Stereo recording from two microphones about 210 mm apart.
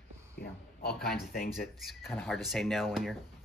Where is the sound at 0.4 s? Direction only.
50° left (ahead or behind).